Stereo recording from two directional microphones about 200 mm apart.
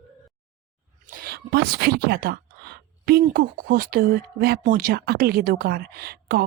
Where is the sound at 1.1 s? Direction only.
50° right (ahead or behind).